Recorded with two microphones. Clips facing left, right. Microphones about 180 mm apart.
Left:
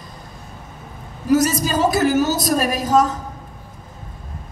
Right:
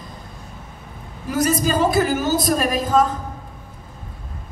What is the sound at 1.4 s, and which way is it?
A woman's voice, 55° right (ahead or behind).